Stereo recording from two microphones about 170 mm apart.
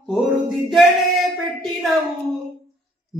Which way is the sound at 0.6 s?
Centre (ahead or behind).